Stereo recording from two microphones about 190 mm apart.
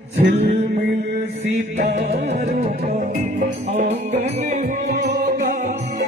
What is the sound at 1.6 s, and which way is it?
Music, 40° right (ahead or behind).